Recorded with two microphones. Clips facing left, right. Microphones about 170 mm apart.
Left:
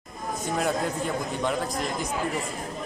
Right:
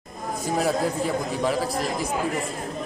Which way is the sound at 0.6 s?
5° right (ahead or behind).